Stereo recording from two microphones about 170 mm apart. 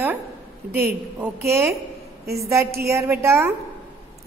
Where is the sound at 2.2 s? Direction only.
65° right (ahead or behind).